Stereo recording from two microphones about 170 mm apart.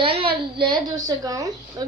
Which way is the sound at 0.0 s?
30° right (ahead or behind).